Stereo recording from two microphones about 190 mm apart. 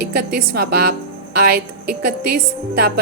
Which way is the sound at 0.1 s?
60° right (ahead or behind).